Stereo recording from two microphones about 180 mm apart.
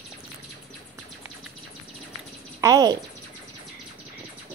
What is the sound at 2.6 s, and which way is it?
Speech, 20° right (ahead or behind).